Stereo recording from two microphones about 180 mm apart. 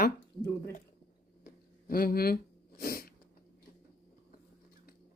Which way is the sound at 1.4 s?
55° left (ahead or behind).